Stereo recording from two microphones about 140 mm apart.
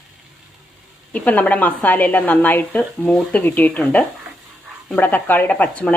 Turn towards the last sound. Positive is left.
turn(degrees=10)  # may be behind; listen again after turning